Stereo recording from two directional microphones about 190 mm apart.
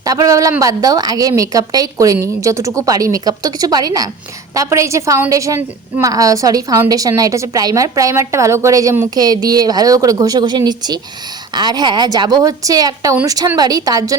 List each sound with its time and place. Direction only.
0.0 s a woman's voice: 20° right (ahead or behind)